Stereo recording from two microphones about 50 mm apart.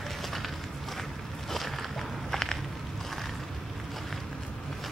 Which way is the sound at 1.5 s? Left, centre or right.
Centre.